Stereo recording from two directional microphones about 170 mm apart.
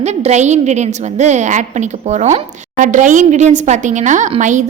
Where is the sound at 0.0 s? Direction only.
40° right (ahead or behind).